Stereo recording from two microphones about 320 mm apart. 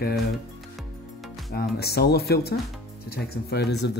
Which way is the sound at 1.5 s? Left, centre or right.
Left.